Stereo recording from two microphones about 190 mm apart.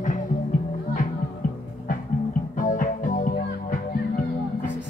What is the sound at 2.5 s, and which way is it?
Music, 45° left (ahead or behind).